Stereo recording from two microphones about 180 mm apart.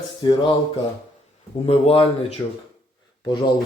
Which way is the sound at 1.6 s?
30° left (ahead or behind).